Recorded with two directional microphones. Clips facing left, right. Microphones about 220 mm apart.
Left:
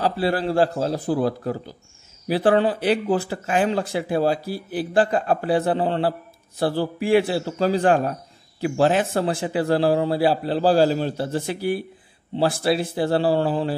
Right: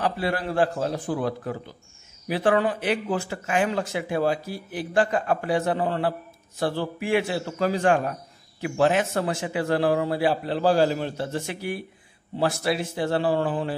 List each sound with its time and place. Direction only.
0.0 s speech: 30° left (ahead or behind)